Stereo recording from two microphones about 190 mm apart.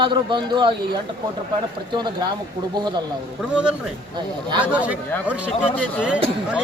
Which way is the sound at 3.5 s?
5° right (ahead or behind).